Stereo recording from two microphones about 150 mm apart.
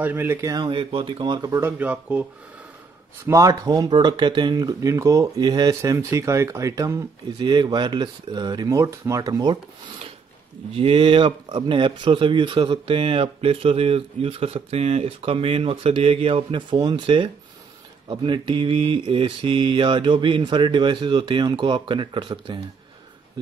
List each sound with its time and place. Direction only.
0.0 s speech: 15° right (ahead or behind)
0.7 s speech: 35° right (ahead or behind)
1.6 s speech: 10° right (ahead or behind)
3.3 s speech: 20° right (ahead or behind)
10.8 s speech: 35° right (ahead or behind)